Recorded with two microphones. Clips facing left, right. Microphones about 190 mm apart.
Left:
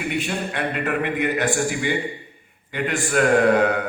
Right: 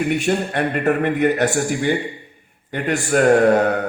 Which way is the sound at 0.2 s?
45° right (ahead or behind).